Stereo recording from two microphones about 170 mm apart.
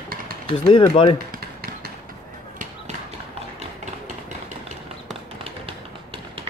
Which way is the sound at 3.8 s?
45° right (ahead or behind).